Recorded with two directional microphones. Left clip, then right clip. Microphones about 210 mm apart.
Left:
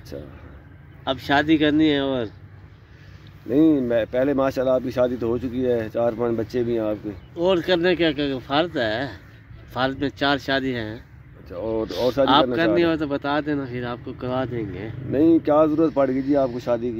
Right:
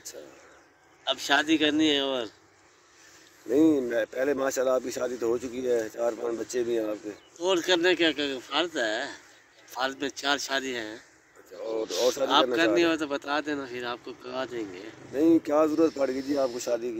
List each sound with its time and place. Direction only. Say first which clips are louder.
1.0 s speech: left 4 dB; 10° left (ahead or behind)
3.4 s speech: left 4 dB; 15° right (ahead or behind)
7.3 s speech: left 5 dB; 15° left (ahead or behind)
12.2 s speech: left 9 dB; 15° right (ahead or behind)
12.5 s speech: left 4 dB; 15° left (ahead or behind)
15.1 s speech: left 6 dB; 15° right (ahead or behind)